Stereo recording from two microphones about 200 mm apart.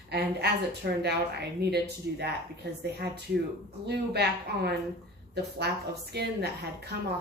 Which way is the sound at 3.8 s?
55° right (ahead or behind).